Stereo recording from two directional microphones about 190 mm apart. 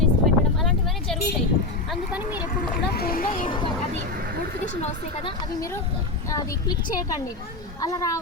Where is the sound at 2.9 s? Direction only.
50° left (ahead or behind).